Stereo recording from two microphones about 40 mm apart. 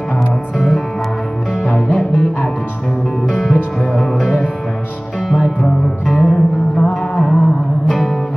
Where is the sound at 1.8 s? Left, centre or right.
Centre.